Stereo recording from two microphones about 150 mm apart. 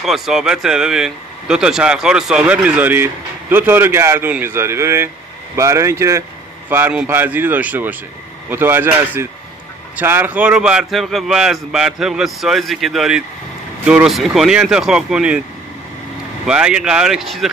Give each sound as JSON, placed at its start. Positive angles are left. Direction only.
{"t": 0.0, "sound": "a man's voice", "side_deg": 0}
{"t": 16.4, "sound": "a man's voice", "side_deg": -5}